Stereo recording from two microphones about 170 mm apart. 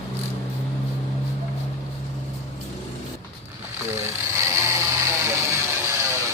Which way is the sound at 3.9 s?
15° right (ahead or behind).